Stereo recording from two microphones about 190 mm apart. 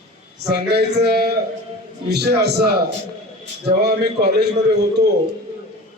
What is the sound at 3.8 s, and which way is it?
A man's voice, 60° right (ahead or behind).